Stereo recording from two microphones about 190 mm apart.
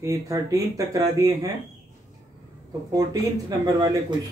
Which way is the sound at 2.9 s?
20° right (ahead or behind).